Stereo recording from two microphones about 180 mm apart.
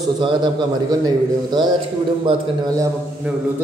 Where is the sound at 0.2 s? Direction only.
25° right (ahead or behind).